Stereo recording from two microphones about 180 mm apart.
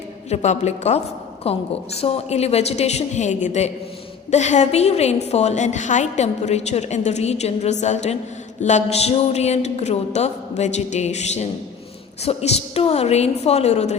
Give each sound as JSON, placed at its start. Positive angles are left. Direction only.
{"t": 0.3, "sound": "a woman's voice", "side_deg": 40}